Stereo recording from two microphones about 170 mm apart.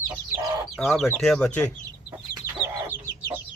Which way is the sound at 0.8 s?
Centre (ahead or behind).